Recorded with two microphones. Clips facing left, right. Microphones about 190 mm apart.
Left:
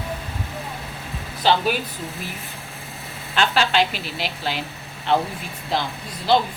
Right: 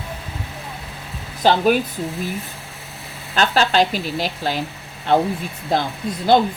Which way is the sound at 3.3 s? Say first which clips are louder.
Right 3 dB; 40° right (ahead or behind).